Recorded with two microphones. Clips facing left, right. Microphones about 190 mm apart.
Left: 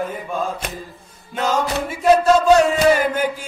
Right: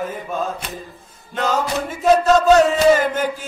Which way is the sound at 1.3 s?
5° left (ahead or behind).